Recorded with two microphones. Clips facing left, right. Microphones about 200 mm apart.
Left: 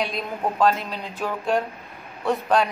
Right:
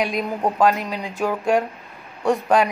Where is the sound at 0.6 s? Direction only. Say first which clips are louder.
Right 1 dB; 5° right (ahead or behind).